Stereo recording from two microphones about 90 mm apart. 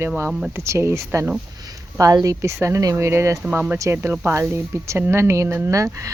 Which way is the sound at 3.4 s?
20° right (ahead or behind).